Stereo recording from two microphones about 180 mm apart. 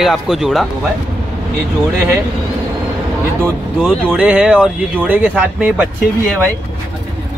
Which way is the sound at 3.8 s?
5° right (ahead or behind).